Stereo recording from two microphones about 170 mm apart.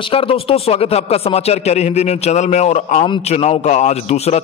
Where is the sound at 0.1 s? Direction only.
35° left (ahead or behind).